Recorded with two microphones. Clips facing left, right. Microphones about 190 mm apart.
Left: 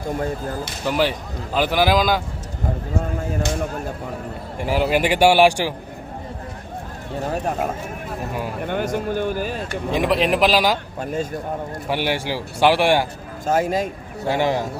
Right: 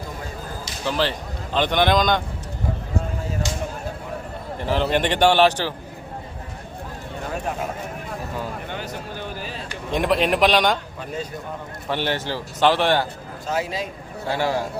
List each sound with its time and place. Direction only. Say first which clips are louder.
0.9 s a man's voice: left 3 dB; 10° left (ahead or behind)
4.6 s a man's voice: left 2 dB; 10° left (ahead or behind)
8.6 s speech: left 9 dB; 50° left (ahead or behind)
9.9 s a man's voice: left 1 dB; centre (ahead or behind)
11.0 s speech: left 5 dB; 50° left (ahead or behind)
11.9 s a man's voice: left 1 dB; 10° left (ahead or behind)
13.4 s speech: left 6 dB; 50° left (ahead or behind)
14.3 s speech: left 3 dB; 20° left (ahead or behind)